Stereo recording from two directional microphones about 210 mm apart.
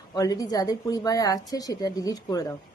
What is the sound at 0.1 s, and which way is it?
A woman's voice, 15° left (ahead or behind).